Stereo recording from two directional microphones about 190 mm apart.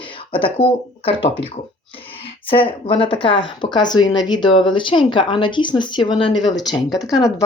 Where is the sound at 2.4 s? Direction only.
30° left (ahead or behind).